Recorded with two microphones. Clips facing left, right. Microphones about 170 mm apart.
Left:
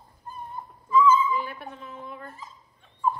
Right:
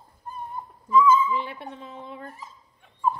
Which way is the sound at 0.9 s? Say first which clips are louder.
Right 1 dB; 20° right (ahead or behind).